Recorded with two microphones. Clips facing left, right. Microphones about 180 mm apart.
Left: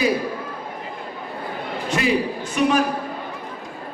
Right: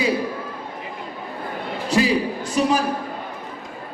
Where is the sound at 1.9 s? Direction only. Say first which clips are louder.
Right 2 dB; 35° right (ahead or behind).